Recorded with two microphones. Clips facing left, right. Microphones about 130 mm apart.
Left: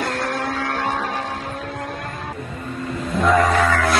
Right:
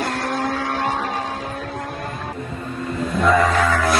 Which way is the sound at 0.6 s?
10° right (ahead or behind).